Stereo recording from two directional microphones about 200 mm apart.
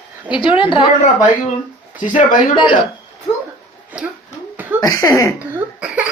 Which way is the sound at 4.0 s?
5° right (ahead or behind).